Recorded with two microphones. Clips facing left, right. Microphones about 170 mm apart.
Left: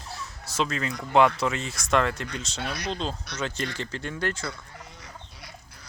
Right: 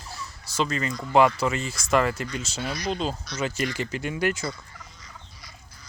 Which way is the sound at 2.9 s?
5° right (ahead or behind).